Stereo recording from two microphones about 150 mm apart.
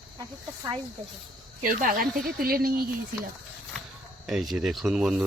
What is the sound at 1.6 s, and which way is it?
Speech, 70° right (ahead or behind).